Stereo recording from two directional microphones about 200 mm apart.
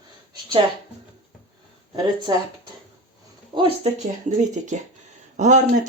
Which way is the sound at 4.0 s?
35° right (ahead or behind).